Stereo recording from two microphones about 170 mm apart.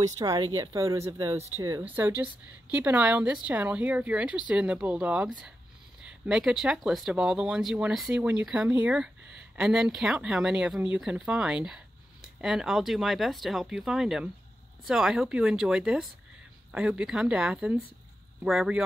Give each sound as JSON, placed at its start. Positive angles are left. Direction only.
{"t": 0.0, "sound": "speech", "side_deg": -20}